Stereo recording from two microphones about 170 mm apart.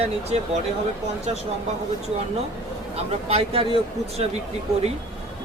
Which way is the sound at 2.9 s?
35° right (ahead or behind).